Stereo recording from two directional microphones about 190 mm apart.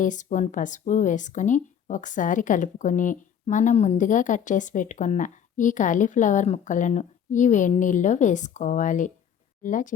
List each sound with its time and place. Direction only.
0.0 s speech: 40° left (ahead or behind)